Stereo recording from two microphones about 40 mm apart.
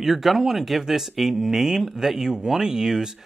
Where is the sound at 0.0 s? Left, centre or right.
Centre.